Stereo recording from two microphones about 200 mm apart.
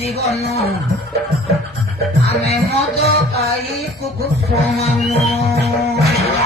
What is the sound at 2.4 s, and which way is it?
Music, 30° left (ahead or behind).